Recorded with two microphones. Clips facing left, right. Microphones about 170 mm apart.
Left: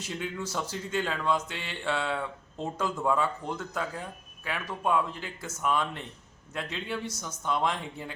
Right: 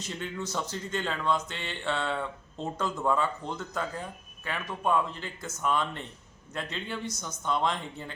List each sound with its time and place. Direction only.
0.0 s speech: 5° left (ahead or behind)